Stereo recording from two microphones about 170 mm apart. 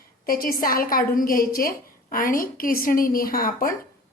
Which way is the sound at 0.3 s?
55° left (ahead or behind).